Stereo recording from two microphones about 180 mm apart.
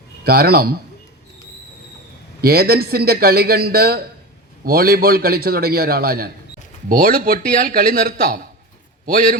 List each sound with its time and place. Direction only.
0.3 s a man's voice: 55° right (ahead or behind)
2.4 s a man's voice: 60° right (ahead or behind)